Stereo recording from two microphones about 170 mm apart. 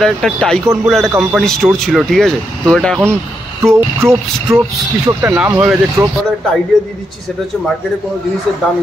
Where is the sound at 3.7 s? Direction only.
15° right (ahead or behind).